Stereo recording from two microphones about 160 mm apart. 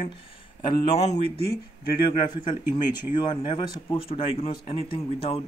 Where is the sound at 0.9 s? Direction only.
40° left (ahead or behind).